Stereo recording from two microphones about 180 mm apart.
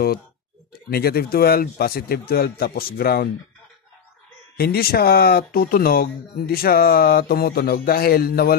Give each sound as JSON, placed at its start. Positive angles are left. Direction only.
{"t": 0.8, "sound": "speech", "side_deg": 60}
{"t": 4.6, "sound": "speech", "side_deg": 60}